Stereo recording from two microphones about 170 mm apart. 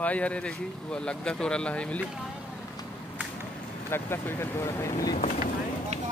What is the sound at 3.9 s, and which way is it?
Speech, 15° left (ahead or behind).